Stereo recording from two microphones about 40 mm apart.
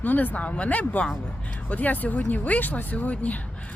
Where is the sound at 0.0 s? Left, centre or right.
Left.